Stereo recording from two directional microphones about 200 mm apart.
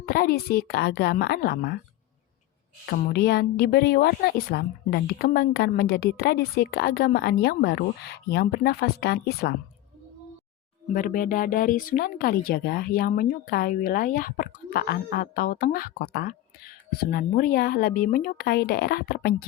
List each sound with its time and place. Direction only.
0.0 s speech: 45° left (ahead or behind)
2.9 s speech: 55° left (ahead or behind)
10.9 s speech: 45° left (ahead or behind)